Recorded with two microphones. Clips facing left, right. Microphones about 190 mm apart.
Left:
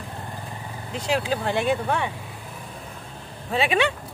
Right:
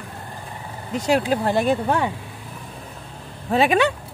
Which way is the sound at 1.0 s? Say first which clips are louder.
Right 5 dB; 40° right (ahead or behind).